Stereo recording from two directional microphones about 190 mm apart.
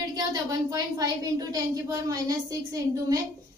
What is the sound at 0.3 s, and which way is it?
Speech, 20° right (ahead or behind).